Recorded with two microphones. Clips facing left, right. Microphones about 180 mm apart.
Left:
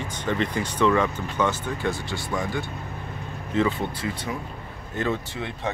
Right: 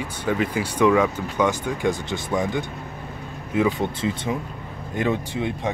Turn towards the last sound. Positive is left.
turn(degrees=-15)  # may be behind; listen again after turning